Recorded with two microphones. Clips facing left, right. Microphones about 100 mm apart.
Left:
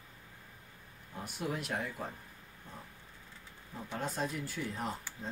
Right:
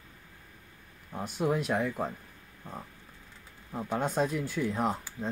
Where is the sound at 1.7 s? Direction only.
55° right (ahead or behind).